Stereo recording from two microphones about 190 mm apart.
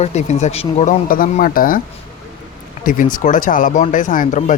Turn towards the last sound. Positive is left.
turn(degrees=45)  # may be behind; listen again after turning